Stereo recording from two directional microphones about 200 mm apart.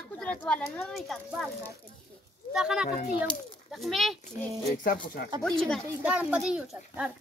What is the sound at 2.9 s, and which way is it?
Speech, 45° left (ahead or behind).